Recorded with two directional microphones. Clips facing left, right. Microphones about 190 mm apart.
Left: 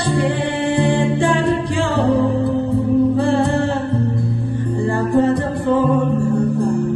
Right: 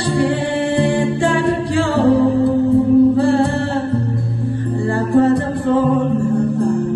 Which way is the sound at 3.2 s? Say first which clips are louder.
Right 2 dB; 20° left (ahead or behind).